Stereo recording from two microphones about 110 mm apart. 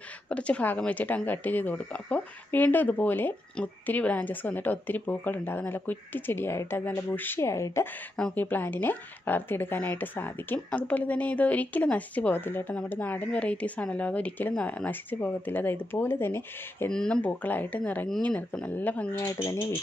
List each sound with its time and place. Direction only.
0.3 s speech: 10° left (ahead or behind)
16.9 s speech: 5° left (ahead or behind)